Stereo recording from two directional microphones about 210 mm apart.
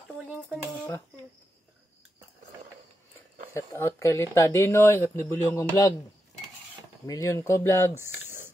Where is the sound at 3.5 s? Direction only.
15° left (ahead or behind).